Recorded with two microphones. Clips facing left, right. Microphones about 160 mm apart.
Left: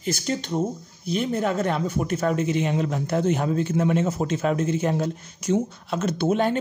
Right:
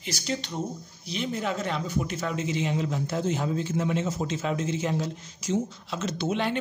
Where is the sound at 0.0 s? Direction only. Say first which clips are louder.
Left 5 dB; 45° left (ahead or behind).